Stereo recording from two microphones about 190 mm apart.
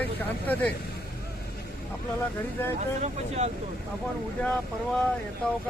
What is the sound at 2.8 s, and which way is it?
Speech, 35° right (ahead or behind).